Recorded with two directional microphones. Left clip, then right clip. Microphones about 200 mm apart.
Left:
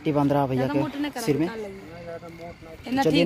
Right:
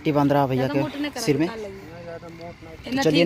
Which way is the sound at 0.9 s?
35° left (ahead or behind).